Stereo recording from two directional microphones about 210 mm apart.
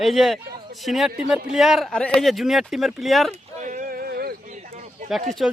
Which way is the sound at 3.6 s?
35° right (ahead or behind).